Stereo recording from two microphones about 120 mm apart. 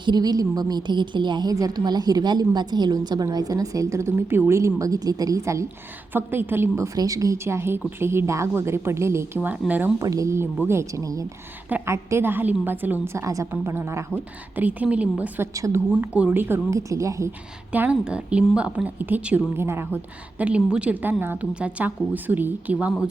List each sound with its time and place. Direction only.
0.0 s a woman's voice: 35° right (ahead or behind); by 9.9 s 15° right (ahead or behind)
10.0 s a woman's voice: 25° right (ahead or behind)
13.2 s a woman's voice: 25° right (ahead or behind); by 15.3 s 10° right (ahead or behind)
15.4 s a woman's voice: 25° right (ahead or behind)
15.9 s a woman's voice: 10° right (ahead or behind); by 17.3 s 25° right (ahead or behind)
17.7 s a woman's voice: 10° right (ahead or behind)
20.4 s a woman's voice: 10° right (ahead or behind)